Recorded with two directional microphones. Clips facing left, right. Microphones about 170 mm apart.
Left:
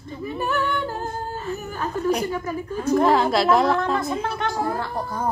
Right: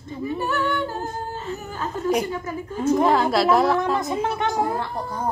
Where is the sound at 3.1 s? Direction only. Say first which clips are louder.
Even; centre (ahead or behind).